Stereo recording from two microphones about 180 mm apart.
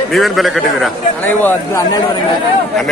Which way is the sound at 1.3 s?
15° left (ahead or behind).